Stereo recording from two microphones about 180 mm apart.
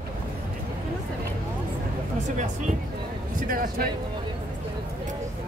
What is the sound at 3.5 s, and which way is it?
Speech, 50° right (ahead or behind).